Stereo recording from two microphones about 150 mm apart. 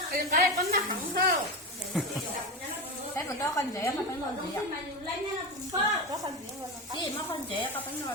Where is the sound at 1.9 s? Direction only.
5° right (ahead or behind).